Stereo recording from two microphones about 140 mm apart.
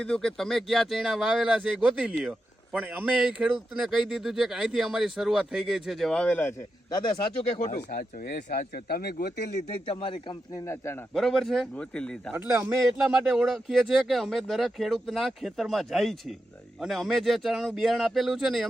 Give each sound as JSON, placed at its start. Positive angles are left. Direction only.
{"t": 0.0, "sound": "speech", "side_deg": 5}
{"t": 7.9, "sound": "speech", "side_deg": 80}
{"t": 9.6, "sound": "a man's voice", "side_deg": 45}
{"t": 10.5, "sound": "speech", "side_deg": 20}
{"t": 11.1, "sound": "speech", "side_deg": 0}
{"t": 12.3, "sound": "a man's voice", "side_deg": -15}
{"t": 13.2, "sound": "speech", "side_deg": 0}